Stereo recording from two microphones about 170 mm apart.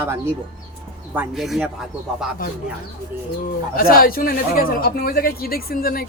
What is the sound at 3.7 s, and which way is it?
Speech, 60° left (ahead or behind).